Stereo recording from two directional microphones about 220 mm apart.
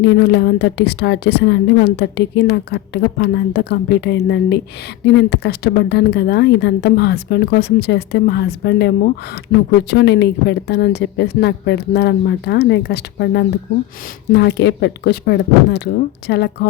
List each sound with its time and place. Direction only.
0.0 s a woman's voice: 50° left (ahead or behind)